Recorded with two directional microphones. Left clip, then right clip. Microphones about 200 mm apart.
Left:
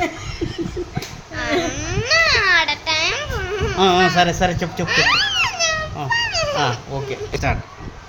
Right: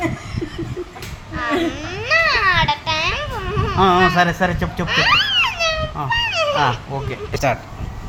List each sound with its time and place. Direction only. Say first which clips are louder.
1.4 s babbling: right 1 dB; 20° left (ahead or behind)
4.3 s a child's voice: even; 10° left (ahead or behind)